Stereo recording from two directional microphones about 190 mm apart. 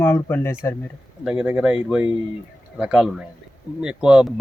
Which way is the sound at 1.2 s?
5° right (ahead or behind).